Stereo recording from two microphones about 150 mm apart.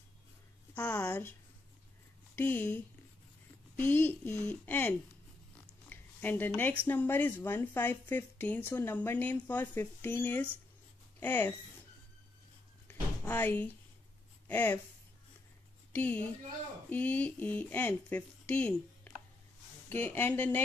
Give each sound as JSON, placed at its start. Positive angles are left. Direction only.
{"t": 0.7, "sound": "a woman's voice", "side_deg": 15}
{"t": 2.3, "sound": "speech", "side_deg": 10}
{"t": 5.9, "sound": "a sound", "side_deg": 10}
{"t": 6.9, "sound": "speech", "side_deg": 15}
{"t": 12.8, "sound": "a sound", "side_deg": 15}
{"t": 14.5, "sound": "speech", "side_deg": 10}
{"t": 15.9, "sound": "a woman's voice", "side_deg": 10}